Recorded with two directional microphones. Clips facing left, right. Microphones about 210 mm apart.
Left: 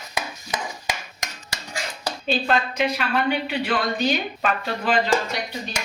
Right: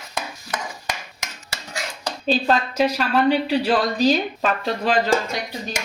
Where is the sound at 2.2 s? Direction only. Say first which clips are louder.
Right 3 dB; 35° right (ahead or behind).